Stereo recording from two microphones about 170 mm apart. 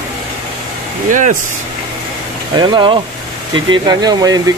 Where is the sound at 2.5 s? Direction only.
25° right (ahead or behind).